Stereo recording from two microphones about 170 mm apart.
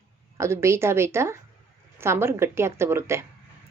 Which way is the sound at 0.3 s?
15° right (ahead or behind).